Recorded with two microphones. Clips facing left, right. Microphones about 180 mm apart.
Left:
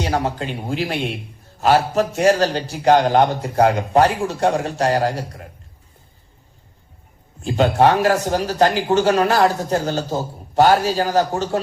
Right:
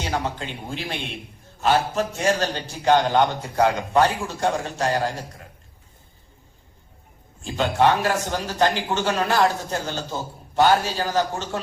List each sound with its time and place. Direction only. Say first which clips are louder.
0.0 s a man's voice: left 5 dB; 40° left (ahead or behind)
7.4 s a man's voice: left 4 dB; 40° left (ahead or behind)